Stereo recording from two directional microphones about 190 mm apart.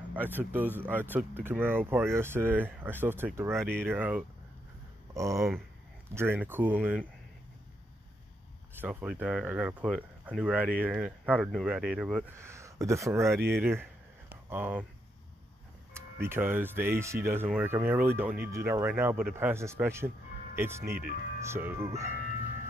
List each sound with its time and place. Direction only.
0.1 s speech: 10° right (ahead or behind)
8.8 s speech: 5° right (ahead or behind)
12.4 s speech: 15° right (ahead or behind)
14.3 s a sound: 10° right (ahead or behind)
15.9 s speech: 10° right (ahead or behind)